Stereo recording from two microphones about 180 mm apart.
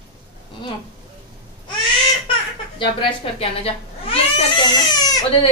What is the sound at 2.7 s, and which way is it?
A woman's voice, 30° left (ahead or behind).